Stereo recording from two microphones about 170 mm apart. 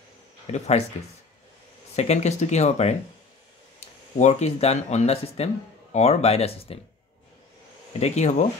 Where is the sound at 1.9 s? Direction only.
40° left (ahead or behind).